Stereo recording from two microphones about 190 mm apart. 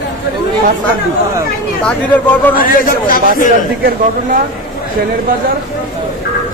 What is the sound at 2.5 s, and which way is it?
Speech, 50° left (ahead or behind).